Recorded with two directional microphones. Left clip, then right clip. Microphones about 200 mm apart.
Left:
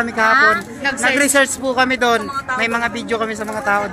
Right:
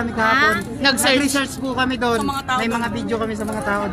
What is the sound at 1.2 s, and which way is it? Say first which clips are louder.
Speech: left 7 dB; 55° left (ahead or behind).